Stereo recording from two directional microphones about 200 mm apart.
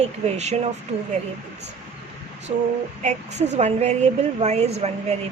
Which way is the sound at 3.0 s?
35° right (ahead or behind).